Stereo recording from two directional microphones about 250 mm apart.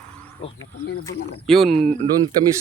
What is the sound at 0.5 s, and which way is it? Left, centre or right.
Speech, left.